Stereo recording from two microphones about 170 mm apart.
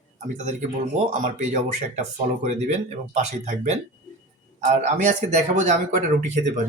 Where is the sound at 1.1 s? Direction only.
45° right (ahead or behind).